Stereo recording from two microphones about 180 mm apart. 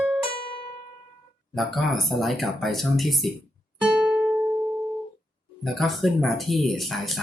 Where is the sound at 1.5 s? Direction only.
Centre (ahead or behind).